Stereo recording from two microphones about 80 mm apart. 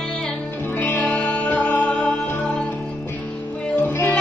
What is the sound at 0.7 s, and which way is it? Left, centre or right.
Music, left.